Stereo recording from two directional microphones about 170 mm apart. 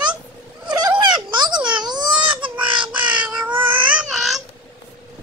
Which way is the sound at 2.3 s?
30° right (ahead or behind).